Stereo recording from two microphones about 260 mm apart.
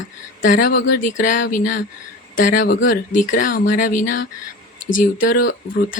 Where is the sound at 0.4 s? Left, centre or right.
Left.